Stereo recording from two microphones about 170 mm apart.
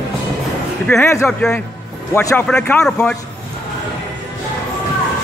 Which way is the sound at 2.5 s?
5° left (ahead or behind).